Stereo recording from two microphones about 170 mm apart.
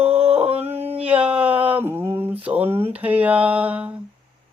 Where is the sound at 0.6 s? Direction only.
10° right (ahead or behind).